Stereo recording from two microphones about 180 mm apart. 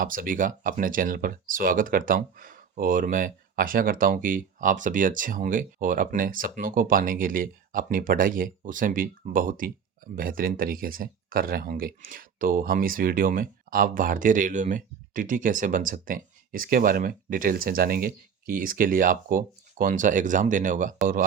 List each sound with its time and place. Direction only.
0.0 s speech: 50° right (ahead or behind)